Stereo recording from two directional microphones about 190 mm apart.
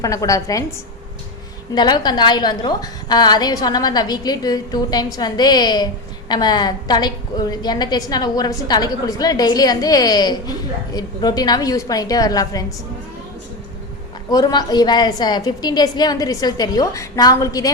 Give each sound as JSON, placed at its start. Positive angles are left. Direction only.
{"t": 0.0, "sound": "a woman's voice", "side_deg": 20}
{"t": 1.7, "sound": "a woman's voice", "side_deg": 20}
{"t": 14.3, "sound": "a woman's voice", "side_deg": 20}